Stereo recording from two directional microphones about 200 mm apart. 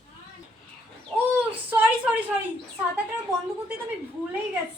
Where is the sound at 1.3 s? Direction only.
10° right (ahead or behind).